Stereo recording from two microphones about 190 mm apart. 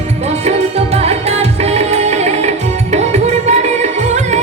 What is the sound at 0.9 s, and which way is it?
Music, 35° right (ahead or behind).